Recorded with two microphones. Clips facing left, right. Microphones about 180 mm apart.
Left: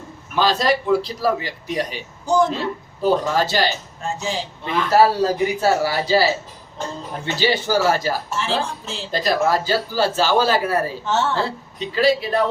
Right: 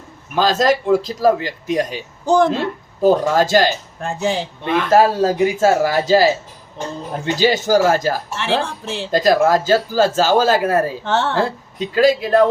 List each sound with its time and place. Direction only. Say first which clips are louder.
0.3 s speech: right 3 dB; 45° right (ahead or behind)
7.3 s speech: right 4 dB; 45° right (ahead or behind)
8.4 s a woman's voice: right 3 dB; 65° right (ahead or behind)
9.1 s speech: right 5 dB; 45° right (ahead or behind)